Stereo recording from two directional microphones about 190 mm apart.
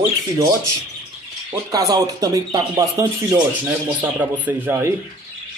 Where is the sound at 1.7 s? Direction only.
20° right (ahead or behind).